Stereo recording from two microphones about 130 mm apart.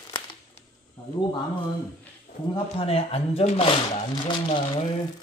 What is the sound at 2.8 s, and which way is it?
Speech, 50° left (ahead or behind).